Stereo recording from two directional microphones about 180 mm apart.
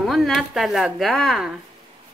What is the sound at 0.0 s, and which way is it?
Speech, centre (ahead or behind).